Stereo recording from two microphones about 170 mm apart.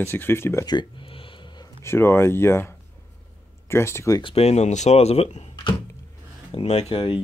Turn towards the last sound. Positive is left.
turn(degrees=35)  # may be behind; listen again after turning